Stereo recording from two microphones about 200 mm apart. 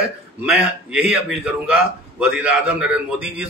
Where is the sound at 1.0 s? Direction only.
5° right (ahead or behind).